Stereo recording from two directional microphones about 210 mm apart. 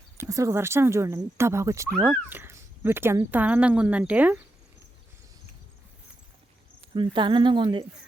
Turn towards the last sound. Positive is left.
turn(degrees=-20)  # may be behind; listen again after turning